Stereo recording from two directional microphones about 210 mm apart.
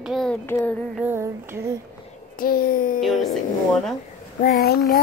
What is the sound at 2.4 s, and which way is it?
Speech, 45° left (ahead or behind).